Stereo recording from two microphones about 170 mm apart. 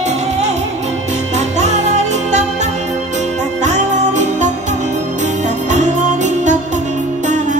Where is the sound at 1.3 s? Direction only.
40° right (ahead or behind).